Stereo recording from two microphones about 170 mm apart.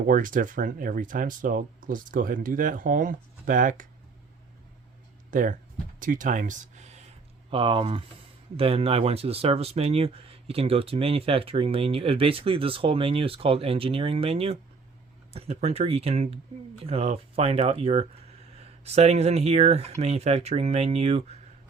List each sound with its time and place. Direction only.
0.1 s speech: 50° right (ahead or behind)
5.3 s speech: 50° right (ahead or behind)
7.5 s speech: 30° right (ahead or behind)